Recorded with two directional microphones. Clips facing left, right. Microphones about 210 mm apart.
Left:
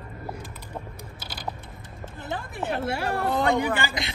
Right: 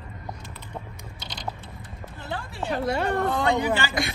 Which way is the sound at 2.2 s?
20° left (ahead or behind).